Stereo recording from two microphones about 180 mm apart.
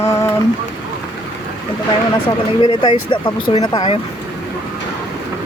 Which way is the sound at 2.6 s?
25° left (ahead or behind).